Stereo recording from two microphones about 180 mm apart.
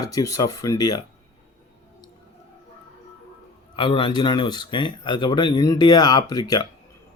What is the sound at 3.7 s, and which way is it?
Speech, 25° left (ahead or behind).